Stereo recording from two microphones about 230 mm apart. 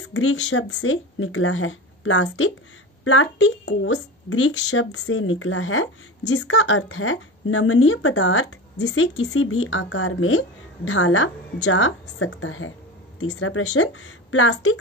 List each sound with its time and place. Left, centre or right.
0.1 s speech: left
5.0 s speech: left